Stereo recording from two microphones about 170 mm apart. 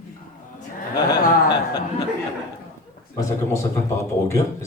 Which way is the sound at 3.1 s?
20° left (ahead or behind).